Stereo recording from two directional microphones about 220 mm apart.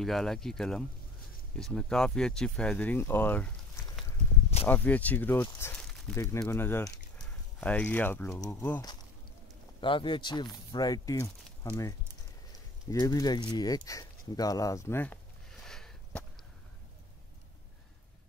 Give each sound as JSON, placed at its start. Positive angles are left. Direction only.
{"t": 0.0, "sound": "speech", "side_deg": 0}
{"t": 9.8, "sound": "a man's voice", "side_deg": 20}
{"t": 12.5, "sound": "speech", "side_deg": 15}
{"t": 15.6, "sound": "sniff", "side_deg": 0}